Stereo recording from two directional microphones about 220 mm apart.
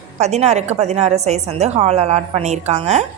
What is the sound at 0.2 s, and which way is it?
A woman's voice, 30° right (ahead or behind).